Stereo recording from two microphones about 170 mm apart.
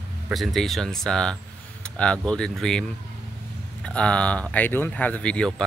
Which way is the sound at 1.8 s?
5° left (ahead or behind).